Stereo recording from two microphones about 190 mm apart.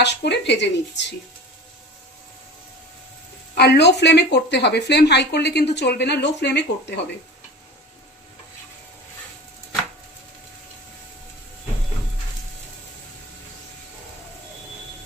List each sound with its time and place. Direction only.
0.0 s a woman's voice: 65° left (ahead or behind)
3.5 s a woman's voice: 60° left (ahead or behind)